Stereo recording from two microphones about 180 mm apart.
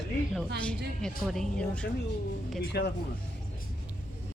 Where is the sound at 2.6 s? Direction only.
65° left (ahead or behind).